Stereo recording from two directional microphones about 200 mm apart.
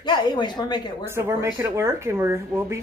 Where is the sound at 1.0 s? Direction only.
10° right (ahead or behind).